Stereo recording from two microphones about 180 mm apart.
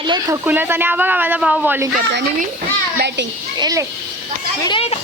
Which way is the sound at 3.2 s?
90° right.